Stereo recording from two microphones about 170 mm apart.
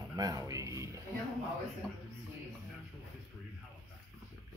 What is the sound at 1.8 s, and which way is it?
Speech, centre (ahead or behind).